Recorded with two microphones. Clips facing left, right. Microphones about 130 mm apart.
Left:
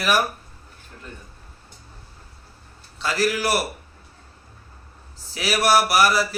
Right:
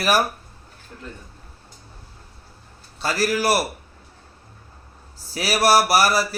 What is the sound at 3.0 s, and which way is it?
Speech, 40° right (ahead or behind).